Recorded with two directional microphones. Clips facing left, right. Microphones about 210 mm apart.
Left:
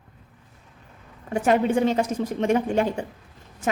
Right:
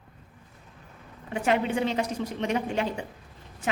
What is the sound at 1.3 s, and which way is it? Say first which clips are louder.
A woman's voice: left 5 dB; 45° left (ahead or behind).